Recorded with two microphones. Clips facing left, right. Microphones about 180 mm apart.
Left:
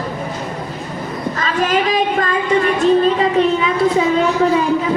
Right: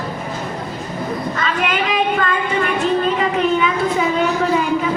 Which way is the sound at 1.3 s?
35° left (ahead or behind).